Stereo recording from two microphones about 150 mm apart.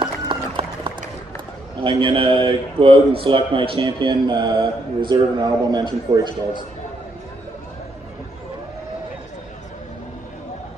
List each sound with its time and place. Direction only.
0.0 s run: 35° right (ahead or behind)
1.8 s a man's voice: 35° right (ahead or behind)